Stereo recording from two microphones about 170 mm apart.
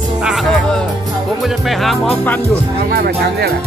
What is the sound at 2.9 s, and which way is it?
Speech, 70° right (ahead or behind).